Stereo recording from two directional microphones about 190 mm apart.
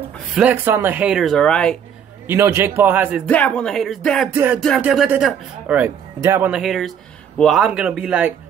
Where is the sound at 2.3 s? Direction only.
15° right (ahead or behind).